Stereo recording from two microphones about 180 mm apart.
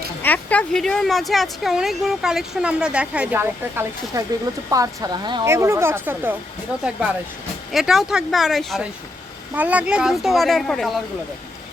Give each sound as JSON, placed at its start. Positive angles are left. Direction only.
{"t": 0.2, "sound": "speech", "side_deg": 10}
{"t": 7.7, "sound": "speech", "side_deg": 0}